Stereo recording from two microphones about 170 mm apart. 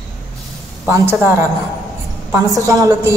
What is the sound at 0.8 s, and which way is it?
A woman's voice, 15° right (ahead or behind).